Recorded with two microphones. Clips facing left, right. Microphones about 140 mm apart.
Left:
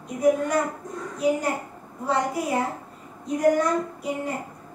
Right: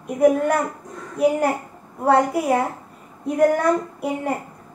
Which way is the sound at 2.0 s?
60° right (ahead or behind).